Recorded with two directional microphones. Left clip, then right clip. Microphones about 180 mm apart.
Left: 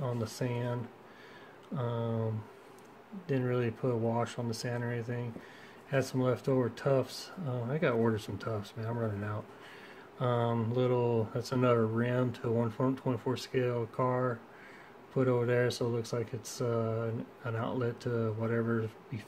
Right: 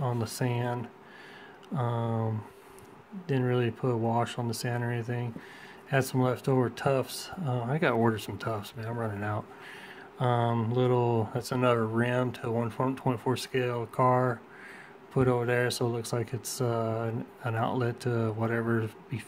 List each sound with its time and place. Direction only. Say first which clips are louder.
0.0 s speech: right 4 dB; 25° right (ahead or behind)
1.8 s speech: right 3 dB; 20° right (ahead or behind)